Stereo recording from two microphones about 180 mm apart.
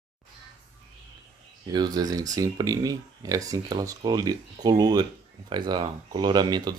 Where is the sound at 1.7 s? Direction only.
20° right (ahead or behind).